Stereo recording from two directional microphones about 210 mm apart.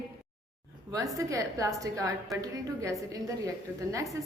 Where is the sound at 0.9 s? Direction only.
15° right (ahead or behind).